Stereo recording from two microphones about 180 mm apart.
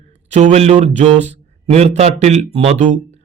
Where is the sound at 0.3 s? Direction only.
40° right (ahead or behind).